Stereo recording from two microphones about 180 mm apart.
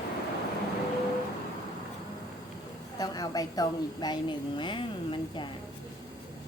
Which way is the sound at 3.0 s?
20° left (ahead or behind).